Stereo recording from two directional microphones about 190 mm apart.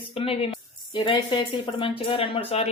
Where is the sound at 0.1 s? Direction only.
30° left (ahead or behind).